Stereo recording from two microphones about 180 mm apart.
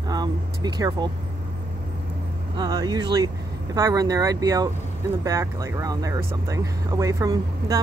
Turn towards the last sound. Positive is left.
turn(degrees=-20)  # may be behind; listen again after turning